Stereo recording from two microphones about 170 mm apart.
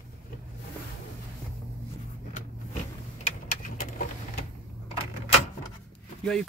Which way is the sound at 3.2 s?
50° left (ahead or behind).